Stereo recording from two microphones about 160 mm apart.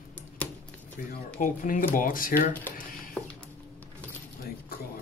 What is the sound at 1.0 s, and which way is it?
Speech, 60° left (ahead or behind).